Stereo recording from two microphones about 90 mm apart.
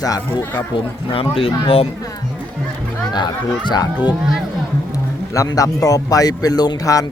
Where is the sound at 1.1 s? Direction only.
90° left.